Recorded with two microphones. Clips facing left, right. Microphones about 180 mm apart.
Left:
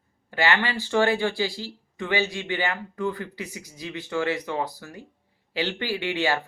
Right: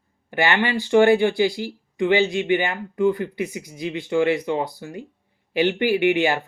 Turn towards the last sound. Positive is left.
turn(degrees=-20)  # may be behind; listen again after turning